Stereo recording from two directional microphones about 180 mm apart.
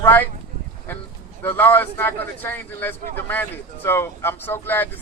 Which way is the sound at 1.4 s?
10° left (ahead or behind).